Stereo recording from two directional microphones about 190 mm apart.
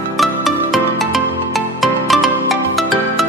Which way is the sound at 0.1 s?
Centre (ahead or behind).